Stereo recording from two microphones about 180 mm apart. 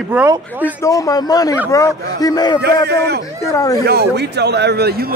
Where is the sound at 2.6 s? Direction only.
65° right (ahead or behind).